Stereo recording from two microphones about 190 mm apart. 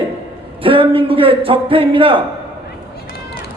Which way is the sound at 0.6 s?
30° right (ahead or behind).